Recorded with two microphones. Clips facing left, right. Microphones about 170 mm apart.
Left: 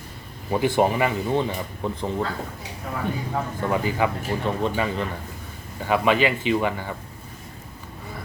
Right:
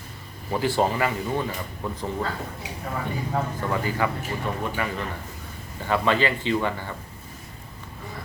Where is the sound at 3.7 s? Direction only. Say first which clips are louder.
Left 4 dB; 20° left (ahead or behind).